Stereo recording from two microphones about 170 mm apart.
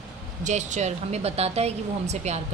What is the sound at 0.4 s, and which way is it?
A woman's voice, 45° right (ahead or behind).